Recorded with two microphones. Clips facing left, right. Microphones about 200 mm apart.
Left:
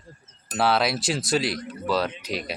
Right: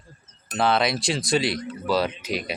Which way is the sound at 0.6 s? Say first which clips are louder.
Right 1 dB; 5° left (ahead or behind).